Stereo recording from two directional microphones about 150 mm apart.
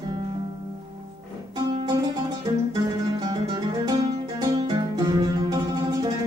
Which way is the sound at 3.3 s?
25° right (ahead or behind).